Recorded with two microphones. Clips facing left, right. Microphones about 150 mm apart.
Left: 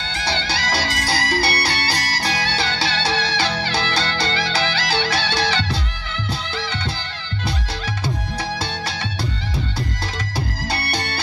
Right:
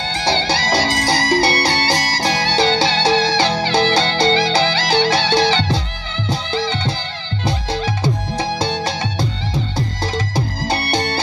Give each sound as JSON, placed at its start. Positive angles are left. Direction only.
{"t": 0.1, "sound": "music", "side_deg": -30}
{"t": 8.4, "sound": "music", "side_deg": -20}
{"t": 10.1, "sound": "music", "side_deg": -20}